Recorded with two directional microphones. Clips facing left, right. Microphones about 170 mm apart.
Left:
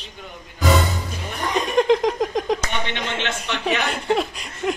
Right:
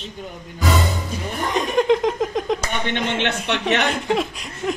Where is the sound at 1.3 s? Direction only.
Centre (ahead or behind).